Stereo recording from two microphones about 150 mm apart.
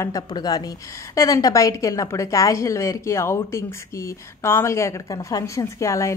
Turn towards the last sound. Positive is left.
turn(degrees=20)  # may be behind; listen again after turning